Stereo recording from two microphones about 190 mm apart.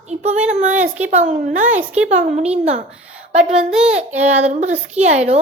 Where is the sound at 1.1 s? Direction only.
40° right (ahead or behind).